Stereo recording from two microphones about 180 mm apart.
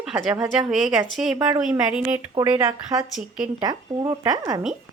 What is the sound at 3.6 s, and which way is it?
Speech, 20° right (ahead or behind).